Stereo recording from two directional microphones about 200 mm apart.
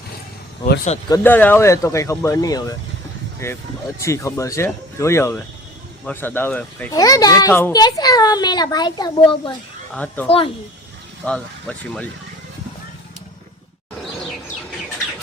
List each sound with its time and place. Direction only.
1.1 s speech: 10° left (ahead or behind)
6.9 s a child's voice: 20° left (ahead or behind)
9.9 s speech: 5° left (ahead or behind)
10.2 s a child's voice: 25° left (ahead or behind)
11.3 s speech: 5° left (ahead or behind)